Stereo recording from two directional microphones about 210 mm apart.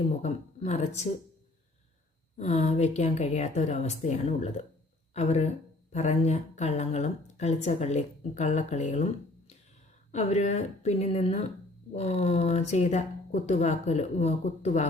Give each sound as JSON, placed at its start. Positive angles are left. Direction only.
{"t": 0.0, "sound": "speech", "side_deg": 30}
{"t": 2.4, "sound": "speech", "side_deg": 30}
{"t": 10.1, "sound": "speech", "side_deg": 35}